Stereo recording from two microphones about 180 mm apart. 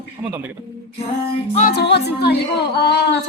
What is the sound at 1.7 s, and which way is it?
Speech, 65° left (ahead or behind).